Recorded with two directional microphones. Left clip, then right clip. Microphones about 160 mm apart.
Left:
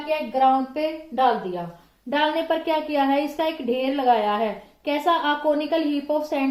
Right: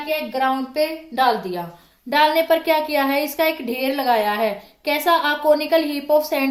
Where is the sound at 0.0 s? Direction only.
20° right (ahead or behind).